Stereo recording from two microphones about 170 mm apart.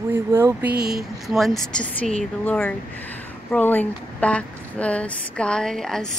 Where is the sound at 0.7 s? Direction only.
65° right (ahead or behind).